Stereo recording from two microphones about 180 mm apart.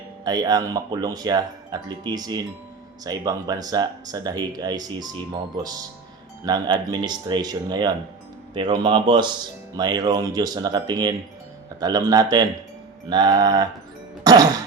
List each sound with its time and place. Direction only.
0.3 s speech: 20° right (ahead or behind)